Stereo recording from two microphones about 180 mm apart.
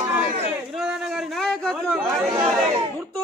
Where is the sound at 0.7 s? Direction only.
5° right (ahead or behind).